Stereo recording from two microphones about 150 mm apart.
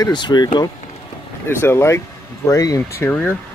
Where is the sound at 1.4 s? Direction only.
15° left (ahead or behind).